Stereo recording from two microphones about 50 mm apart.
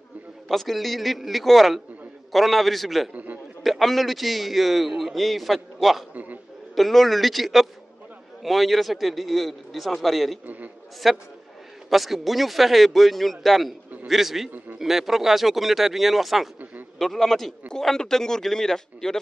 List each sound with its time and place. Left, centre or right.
0.5 s a man's voice: centre
6.1 s a sound: right
6.7 s a man's voice: centre
10.4 s a man's voice: right
11.0 s a man's voice: centre